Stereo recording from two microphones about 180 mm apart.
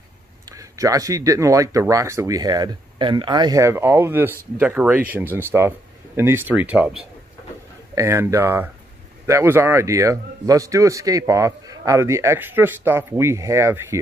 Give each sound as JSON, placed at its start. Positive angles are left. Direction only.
{"t": 0.5, "sound": "a man's voice", "side_deg": -20}
{"t": 7.9, "sound": "a man's voice", "side_deg": -15}